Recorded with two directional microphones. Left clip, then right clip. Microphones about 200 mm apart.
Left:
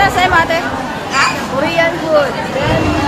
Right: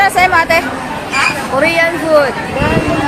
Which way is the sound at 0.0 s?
35° right (ahead or behind).